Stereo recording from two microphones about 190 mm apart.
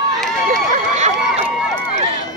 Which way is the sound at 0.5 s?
40° right (ahead or behind).